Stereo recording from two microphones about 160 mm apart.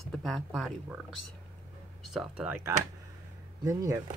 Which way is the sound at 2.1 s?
10° right (ahead or behind).